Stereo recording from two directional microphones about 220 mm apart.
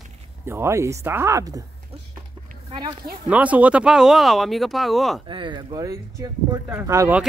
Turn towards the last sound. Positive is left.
turn(degrees=-15)  # may be behind; listen again after turning